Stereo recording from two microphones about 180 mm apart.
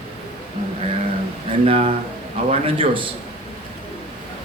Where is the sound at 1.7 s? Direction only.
30° right (ahead or behind).